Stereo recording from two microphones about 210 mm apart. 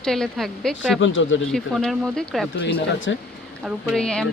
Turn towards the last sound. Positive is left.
turn(degrees=5)  # may be behind; listen again after turning